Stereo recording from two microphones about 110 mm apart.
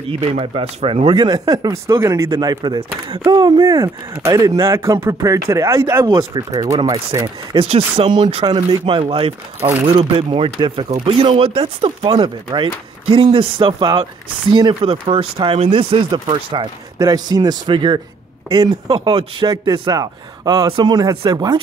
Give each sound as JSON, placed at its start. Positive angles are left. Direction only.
{"t": 0.2, "sound": "speech", "side_deg": -65}
{"t": 3.3, "sound": "speech", "side_deg": -40}
{"t": 6.0, "sound": "speech", "side_deg": -40}
{"t": 7.5, "sound": "speech", "side_deg": -60}
{"t": 8.5, "sound": "speech", "side_deg": -45}
{"t": 9.0, "sound": "speech", "side_deg": -65}
{"t": 9.9, "sound": "speech", "side_deg": -55}
{"t": 17.0, "sound": "speech", "side_deg": -35}
{"t": 18.9, "sound": "speech", "side_deg": -50}